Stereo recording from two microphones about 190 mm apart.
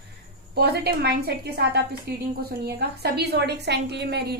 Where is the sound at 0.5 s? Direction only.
55° right (ahead or behind).